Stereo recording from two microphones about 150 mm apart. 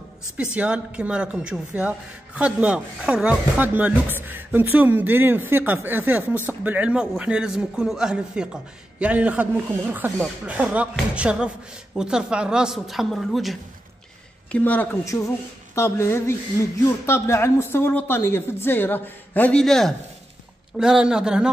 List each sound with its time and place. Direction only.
0.4 s a woman's voice: 5° right (ahead or behind)
14.5 s a woman's voice: 10° left (ahead or behind); by 21.5 s 5° right (ahead or behind)